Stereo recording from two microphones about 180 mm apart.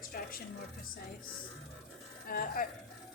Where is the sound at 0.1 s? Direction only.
55° left (ahead or behind).